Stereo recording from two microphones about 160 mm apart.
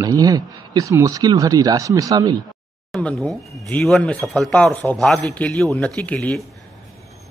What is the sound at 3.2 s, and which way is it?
A man's voice, 5° left (ahead or behind).